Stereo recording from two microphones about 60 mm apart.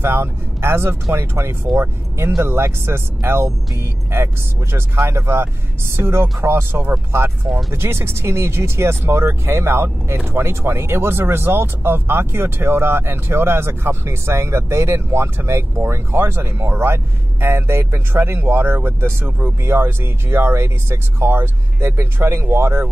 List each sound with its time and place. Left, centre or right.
0.0 s speech: right